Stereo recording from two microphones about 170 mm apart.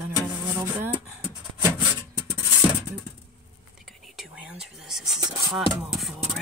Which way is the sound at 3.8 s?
Centre (ahead or behind).